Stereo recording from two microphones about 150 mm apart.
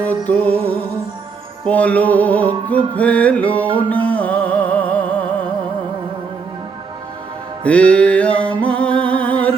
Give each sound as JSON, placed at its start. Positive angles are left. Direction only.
{"t": 0.0, "sound": "music", "side_deg": 10}
{"t": 7.6, "sound": "music", "side_deg": 10}